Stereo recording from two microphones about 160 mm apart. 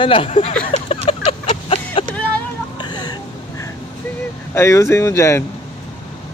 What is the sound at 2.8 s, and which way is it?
Hiccup, 25° left (ahead or behind).